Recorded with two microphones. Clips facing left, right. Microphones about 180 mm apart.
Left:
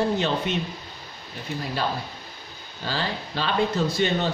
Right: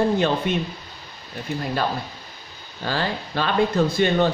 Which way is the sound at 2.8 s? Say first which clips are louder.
Right 4 dB; 50° right (ahead or behind).